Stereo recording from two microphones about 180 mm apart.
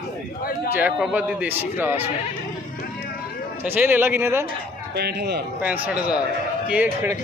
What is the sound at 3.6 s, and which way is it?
Speech, 10° right (ahead or behind).